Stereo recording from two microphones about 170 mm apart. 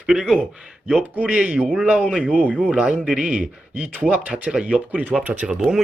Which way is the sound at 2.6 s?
10° right (ahead or behind).